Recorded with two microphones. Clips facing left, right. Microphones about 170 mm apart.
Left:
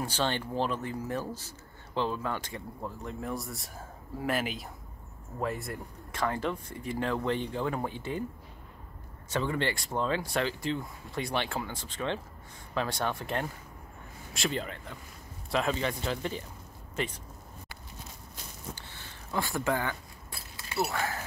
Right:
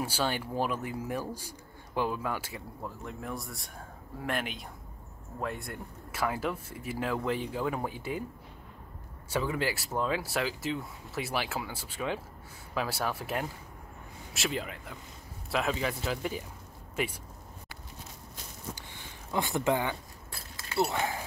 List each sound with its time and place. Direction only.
0.0 s speech: 10° right (ahead or behind)
9.3 s speech: 5° right (ahead or behind)
18.8 s a sound: 15° right (ahead or behind)
20.7 s speech: 25° right (ahead or behind)